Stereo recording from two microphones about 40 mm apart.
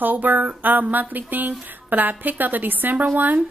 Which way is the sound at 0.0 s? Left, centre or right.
Right.